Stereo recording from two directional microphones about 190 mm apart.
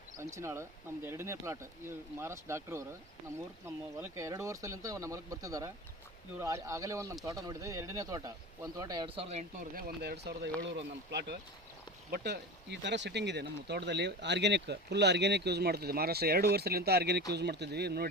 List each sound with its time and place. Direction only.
0.2 s speech: 15° right (ahead or behind)
4.0 s a man's voice: 15° right (ahead or behind); by 9.5 s 35° right (ahead or behind)
9.7 s speech: 55° right (ahead or behind)